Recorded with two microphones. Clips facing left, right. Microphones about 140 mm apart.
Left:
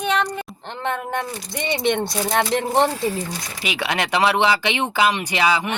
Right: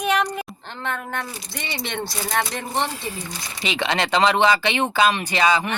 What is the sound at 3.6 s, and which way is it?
Speech, 10° left (ahead or behind).